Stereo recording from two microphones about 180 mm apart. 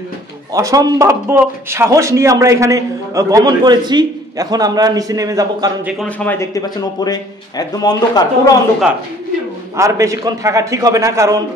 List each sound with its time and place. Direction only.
0.5 s speech: 20° right (ahead or behind)
6.0 s speech: 10° left (ahead or behind)
9.8 s a man's voice: 15° right (ahead or behind)